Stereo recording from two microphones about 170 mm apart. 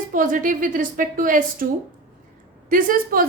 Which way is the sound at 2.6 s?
55° right (ahead or behind).